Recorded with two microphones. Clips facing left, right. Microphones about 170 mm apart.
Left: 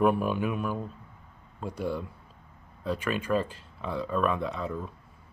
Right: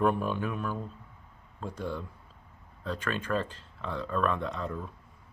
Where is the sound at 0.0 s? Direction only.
10° left (ahead or behind).